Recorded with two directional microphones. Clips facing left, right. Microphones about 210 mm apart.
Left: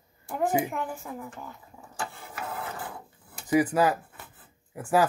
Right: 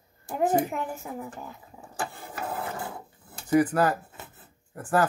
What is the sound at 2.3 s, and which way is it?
Filing, 25° right (ahead or behind).